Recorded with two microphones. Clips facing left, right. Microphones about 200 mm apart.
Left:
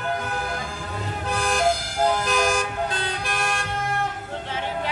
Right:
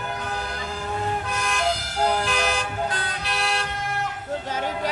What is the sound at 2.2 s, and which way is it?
Toot, 45° left (ahead or behind).